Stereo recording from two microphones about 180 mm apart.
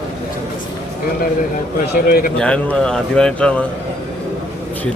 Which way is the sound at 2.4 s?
5° left (ahead or behind).